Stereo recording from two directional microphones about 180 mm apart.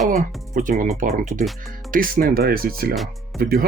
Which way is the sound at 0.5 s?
50° right (ahead or behind).